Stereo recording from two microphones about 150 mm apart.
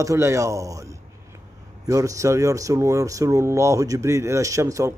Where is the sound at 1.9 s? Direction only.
20° right (ahead or behind).